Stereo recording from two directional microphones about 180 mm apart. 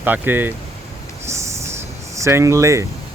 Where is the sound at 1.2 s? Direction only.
15° right (ahead or behind).